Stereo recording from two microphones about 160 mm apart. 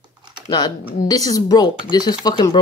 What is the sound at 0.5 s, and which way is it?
Speech, 25° left (ahead or behind).